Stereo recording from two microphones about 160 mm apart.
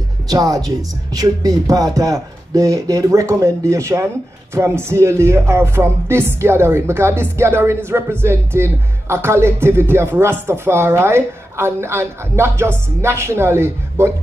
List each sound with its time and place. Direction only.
0.3 s speech: 25° right (ahead or behind)